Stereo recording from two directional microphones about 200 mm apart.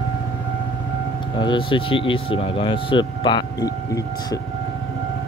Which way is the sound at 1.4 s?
25° left (ahead or behind).